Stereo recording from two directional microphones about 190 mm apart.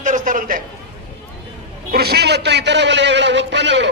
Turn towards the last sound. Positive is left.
turn(degrees=-65)  # may be behind; listen again after turning